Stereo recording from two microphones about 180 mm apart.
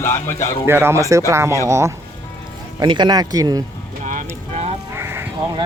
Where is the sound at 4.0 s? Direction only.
45° right (ahead or behind).